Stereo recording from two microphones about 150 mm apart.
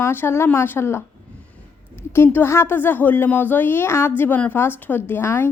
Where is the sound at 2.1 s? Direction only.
15° left (ahead or behind).